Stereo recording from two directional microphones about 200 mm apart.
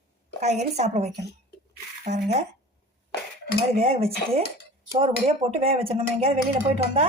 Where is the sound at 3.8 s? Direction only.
30° right (ahead or behind).